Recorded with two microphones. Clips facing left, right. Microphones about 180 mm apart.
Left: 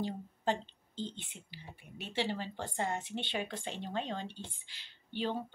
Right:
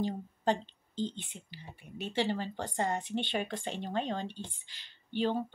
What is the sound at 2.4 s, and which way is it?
A woman's voice, 40° right (ahead or behind).